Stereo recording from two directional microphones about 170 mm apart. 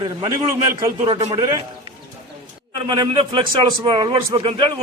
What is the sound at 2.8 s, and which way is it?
A man's voice, 25° right (ahead or behind).